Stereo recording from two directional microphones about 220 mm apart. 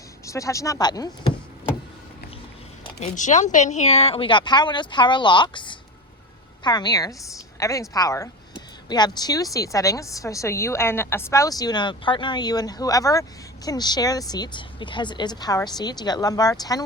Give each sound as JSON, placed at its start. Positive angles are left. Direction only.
{"t": 0.3, "sound": "speech", "side_deg": 15}
{"t": 3.0, "sound": "a woman's voice", "side_deg": 35}